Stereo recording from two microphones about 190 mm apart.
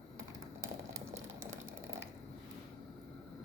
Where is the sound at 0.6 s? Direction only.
15° right (ahead or behind).